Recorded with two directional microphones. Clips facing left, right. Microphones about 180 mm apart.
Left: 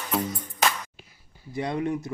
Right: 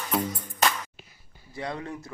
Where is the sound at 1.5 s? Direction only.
20° left (ahead or behind).